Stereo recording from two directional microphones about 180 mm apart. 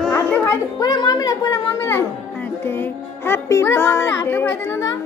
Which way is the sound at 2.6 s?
15° left (ahead or behind).